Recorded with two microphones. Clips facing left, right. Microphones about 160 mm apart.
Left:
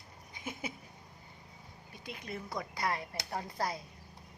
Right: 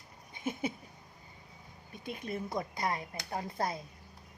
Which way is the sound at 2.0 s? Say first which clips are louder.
Right 5 dB; 25° right (ahead or behind).